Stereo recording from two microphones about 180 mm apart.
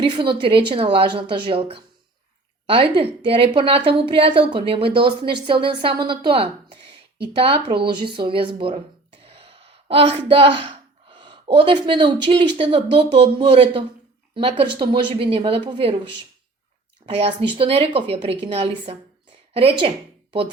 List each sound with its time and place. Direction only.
0.0 s a woman's voice: 30° right (ahead or behind)
17.0 s a sound: 30° right (ahead or behind)
17.4 s a woman's voice: 30° right (ahead or behind)